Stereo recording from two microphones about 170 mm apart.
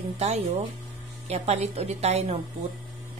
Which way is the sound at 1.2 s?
40° right (ahead or behind).